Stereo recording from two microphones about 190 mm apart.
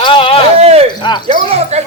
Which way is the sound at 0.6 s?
35° right (ahead or behind).